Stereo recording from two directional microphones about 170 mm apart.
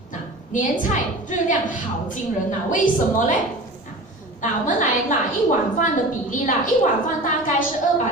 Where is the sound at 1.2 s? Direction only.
50° left (ahead or behind).